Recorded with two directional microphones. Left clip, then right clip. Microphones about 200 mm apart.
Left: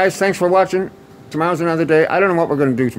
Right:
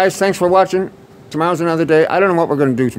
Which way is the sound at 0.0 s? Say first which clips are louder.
Right 1 dB; 25° right (ahead or behind).